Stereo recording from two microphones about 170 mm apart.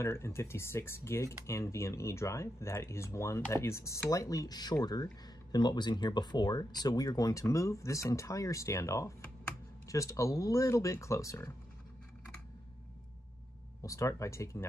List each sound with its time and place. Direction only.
0.0 s speech: 15° left (ahead or behind)
13.8 s speech: 20° left (ahead or behind)